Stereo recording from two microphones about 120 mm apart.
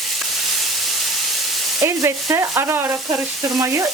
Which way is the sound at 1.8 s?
25° right (ahead or behind).